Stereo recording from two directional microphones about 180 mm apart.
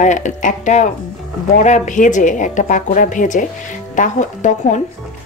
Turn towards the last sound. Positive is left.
turn(degrees=45)  # may be behind; listen again after turning